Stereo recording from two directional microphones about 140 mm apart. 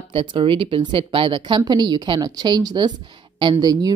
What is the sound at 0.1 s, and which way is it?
A woman's voice, 40° right (ahead or behind).